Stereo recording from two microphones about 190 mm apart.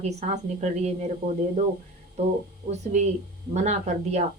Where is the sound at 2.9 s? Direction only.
40° right (ahead or behind).